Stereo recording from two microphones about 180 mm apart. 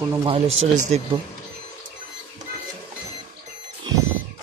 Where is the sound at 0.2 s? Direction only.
30° right (ahead or behind).